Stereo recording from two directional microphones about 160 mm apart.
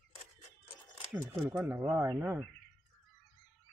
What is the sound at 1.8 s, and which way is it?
Speech, 20° right (ahead or behind).